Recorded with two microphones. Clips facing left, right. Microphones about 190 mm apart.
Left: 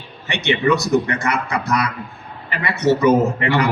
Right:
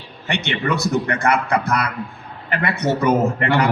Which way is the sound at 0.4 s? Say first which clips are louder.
Left 6 dB; 55° right (ahead or behind).